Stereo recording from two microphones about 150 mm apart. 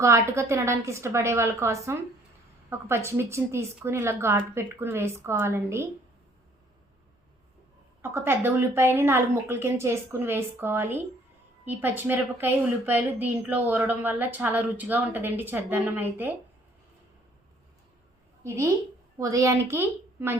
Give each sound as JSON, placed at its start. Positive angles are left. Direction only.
{"t": 0.0, "sound": "a woman's voice", "side_deg": -20}
{"t": 8.0, "sound": "a woman's voice", "side_deg": -15}
{"t": 18.4, "sound": "a woman's voice", "side_deg": -20}